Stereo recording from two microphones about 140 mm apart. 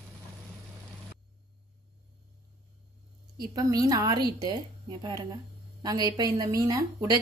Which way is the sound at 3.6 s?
25° right (ahead or behind).